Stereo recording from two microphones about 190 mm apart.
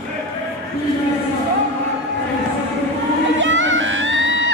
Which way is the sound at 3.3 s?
80° right.